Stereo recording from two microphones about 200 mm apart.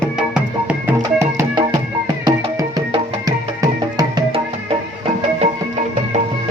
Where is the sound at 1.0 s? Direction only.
15° right (ahead or behind).